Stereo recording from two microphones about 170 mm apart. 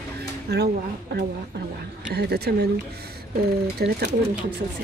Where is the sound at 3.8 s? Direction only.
75° right (ahead or behind).